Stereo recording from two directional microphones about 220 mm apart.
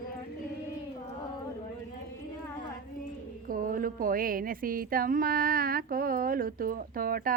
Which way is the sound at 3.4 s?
40° right (ahead or behind).